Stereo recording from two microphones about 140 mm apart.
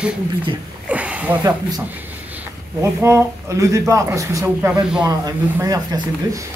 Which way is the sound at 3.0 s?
20° right (ahead or behind).